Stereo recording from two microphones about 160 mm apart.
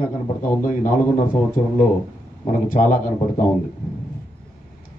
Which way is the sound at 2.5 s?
55° left (ahead or behind).